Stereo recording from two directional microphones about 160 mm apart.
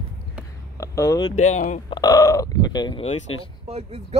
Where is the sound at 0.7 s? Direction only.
20° left (ahead or behind).